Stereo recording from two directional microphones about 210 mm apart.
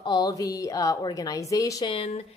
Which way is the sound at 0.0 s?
20° left (ahead or behind).